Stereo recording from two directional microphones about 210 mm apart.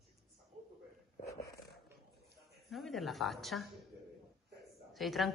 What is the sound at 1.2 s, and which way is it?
Dog, 15° left (ahead or behind).